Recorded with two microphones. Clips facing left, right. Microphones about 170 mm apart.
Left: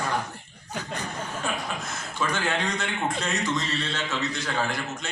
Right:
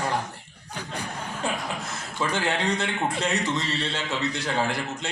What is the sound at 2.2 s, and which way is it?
A man's voice, 30° right (ahead or behind).